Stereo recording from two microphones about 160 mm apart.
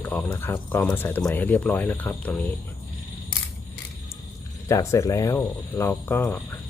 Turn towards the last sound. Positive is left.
turn(degrees=15)  # may be behind; listen again after turning